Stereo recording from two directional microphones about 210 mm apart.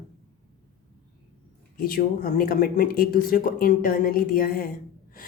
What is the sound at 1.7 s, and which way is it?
A woman's voice, 45° left (ahead or behind).